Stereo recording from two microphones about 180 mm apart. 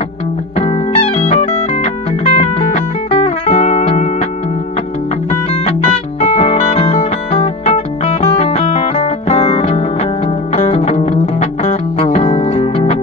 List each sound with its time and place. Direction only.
1.1 s music: 40° left (ahead or behind)
5.3 s music: 40° left (ahead or behind)